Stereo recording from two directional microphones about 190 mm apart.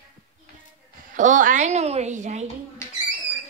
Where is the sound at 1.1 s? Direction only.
40° right (ahead or behind).